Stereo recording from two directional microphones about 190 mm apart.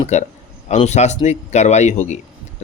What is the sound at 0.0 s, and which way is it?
A man's voice, 35° left (ahead or behind).